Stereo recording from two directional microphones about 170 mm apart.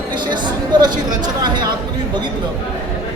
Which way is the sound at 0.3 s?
25° right (ahead or behind).